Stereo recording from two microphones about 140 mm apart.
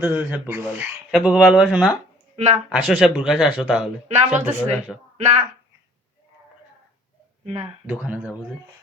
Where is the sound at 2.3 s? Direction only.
50° right (ahead or behind).